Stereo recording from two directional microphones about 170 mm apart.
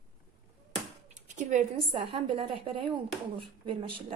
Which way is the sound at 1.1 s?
45° right (ahead or behind).